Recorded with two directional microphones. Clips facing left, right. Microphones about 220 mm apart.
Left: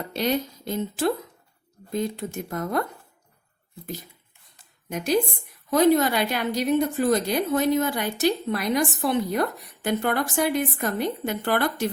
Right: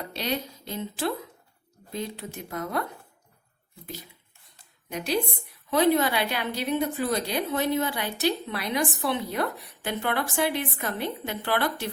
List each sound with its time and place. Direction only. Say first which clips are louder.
0.1 s a woman's voice: left 7 dB; 45° left (ahead or behind)
4.9 s a woman's voice: left 4 dB; 45° left (ahead or behind)